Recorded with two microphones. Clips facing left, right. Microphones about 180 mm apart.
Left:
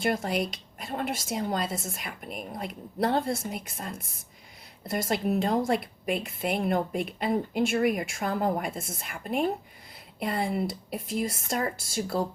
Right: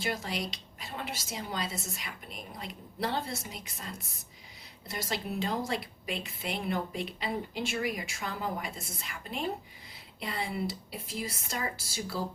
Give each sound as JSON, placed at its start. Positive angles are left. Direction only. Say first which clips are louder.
{"t": 0.0, "sound": "a woman's voice", "louder": "left 7 dB", "side_deg": 50}